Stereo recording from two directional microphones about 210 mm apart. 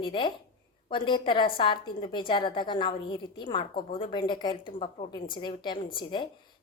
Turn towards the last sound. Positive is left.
turn(degrees=20)  # may be behind; listen again after turning